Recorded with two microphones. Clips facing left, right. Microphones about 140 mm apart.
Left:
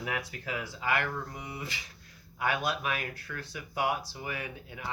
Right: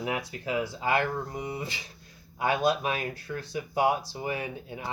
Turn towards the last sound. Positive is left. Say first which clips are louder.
# right 4 dB
turn(degrees=-30)  # may be behind; listen again after turning